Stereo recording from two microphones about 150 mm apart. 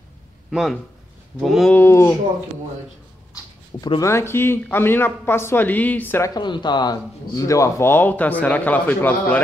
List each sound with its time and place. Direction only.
0.5 s speech: centre (ahead or behind)
1.8 s speech: 15° left (ahead or behind)
4.0 s speech: 15° left (ahead or behind)
6.3 s speech: 30° left (ahead or behind); by 9.4 s 10° left (ahead or behind)